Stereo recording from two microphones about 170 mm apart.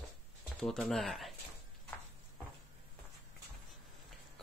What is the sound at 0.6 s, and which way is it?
Speech, 5° left (ahead or behind).